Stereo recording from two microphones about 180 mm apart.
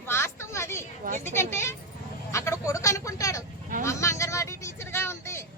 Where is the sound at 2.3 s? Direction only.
15° left (ahead or behind).